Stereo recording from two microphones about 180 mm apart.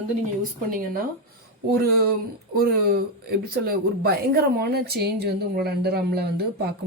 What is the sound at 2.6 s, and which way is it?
Speech, 60° right (ahead or behind).